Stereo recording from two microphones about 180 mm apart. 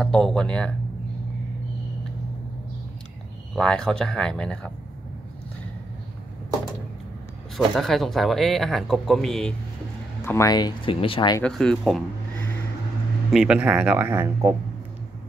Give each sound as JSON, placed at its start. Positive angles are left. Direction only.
{"t": 0.0, "sound": "speech", "side_deg": 5}
{"t": 3.5, "sound": "speech", "side_deg": 5}
{"t": 7.5, "sound": "speech", "side_deg": 0}
{"t": 10.2, "sound": "speech", "side_deg": 15}
{"t": 11.4, "sound": "speech", "side_deg": 5}
{"t": 13.3, "sound": "speech", "side_deg": -5}